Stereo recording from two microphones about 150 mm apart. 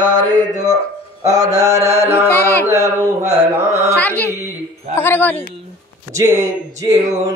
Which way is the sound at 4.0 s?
10° left (ahead or behind).